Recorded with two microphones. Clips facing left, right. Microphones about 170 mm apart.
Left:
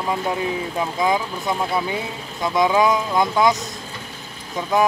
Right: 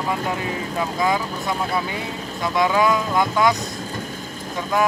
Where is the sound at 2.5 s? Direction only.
20° left (ahead or behind).